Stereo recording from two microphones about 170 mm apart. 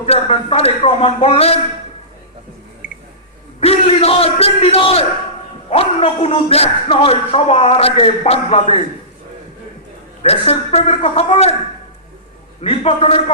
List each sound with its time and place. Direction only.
0.0 s speech: 35° left (ahead or behind)
3.6 s speech: 35° left (ahead or behind)
10.2 s speech: 40° left (ahead or behind)
12.6 s speech: 35° left (ahead or behind)